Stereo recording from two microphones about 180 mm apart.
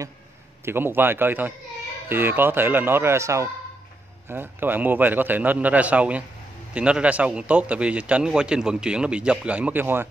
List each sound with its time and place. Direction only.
0.7 s a man's voice: 10° right (ahead or behind)